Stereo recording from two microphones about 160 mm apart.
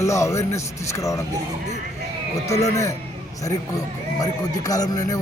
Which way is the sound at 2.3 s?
20° left (ahead or behind).